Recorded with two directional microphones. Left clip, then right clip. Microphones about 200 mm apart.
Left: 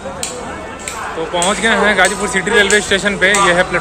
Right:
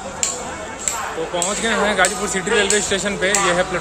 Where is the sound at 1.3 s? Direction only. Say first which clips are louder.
Left 8 dB; 5° right (ahead or behind).